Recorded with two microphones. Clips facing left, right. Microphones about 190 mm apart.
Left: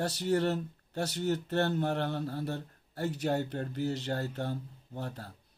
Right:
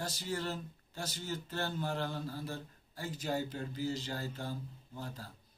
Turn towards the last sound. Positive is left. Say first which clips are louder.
# left 5 dB
turn(degrees=60)  # may be behind; listen again after turning